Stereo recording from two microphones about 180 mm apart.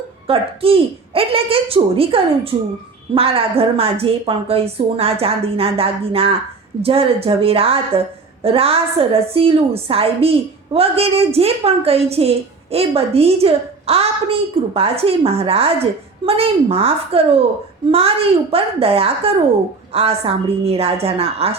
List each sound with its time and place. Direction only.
0.3 s a woman's voice: 30° right (ahead or behind)